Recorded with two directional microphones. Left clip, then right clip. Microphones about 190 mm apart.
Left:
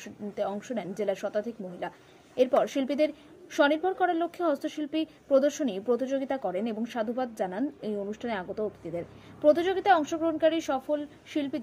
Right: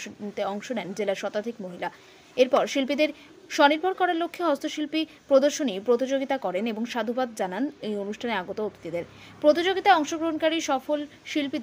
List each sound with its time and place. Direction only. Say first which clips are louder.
0.4 s speech: right 2 dB; 30° right (ahead or behind)